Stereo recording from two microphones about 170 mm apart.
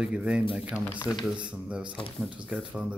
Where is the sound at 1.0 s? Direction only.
25° left (ahead or behind).